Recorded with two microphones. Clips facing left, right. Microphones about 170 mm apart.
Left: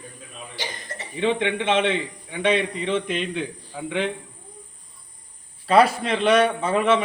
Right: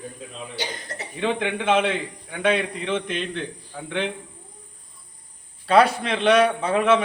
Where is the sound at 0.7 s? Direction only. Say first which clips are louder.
Right 2 dB; 70° right (ahead or behind).